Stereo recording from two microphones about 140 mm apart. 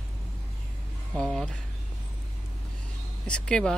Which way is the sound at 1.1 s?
5° left (ahead or behind).